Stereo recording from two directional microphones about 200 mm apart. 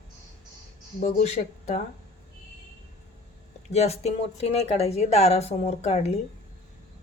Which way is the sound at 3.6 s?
35° left (ahead or behind).